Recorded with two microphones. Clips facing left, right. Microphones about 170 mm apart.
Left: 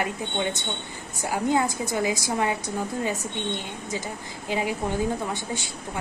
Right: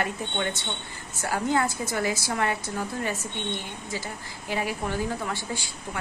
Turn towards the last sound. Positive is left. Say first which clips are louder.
# left 2 dB
turn(degrees=20)  # may be behind; listen again after turning